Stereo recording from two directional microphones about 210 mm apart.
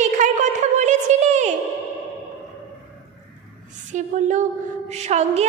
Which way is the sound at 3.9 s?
35° right (ahead or behind).